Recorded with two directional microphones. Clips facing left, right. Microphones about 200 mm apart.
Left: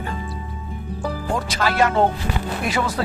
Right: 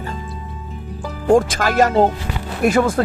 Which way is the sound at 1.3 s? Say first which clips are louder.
Right 10 dB; 50° right (ahead or behind).